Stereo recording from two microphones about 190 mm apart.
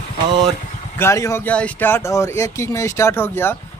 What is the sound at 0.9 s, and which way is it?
Speech, 15° left (ahead or behind).